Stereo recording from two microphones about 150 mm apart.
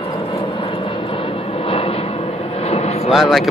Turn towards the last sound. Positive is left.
turn(degrees=0)  # may be behind; listen again after turning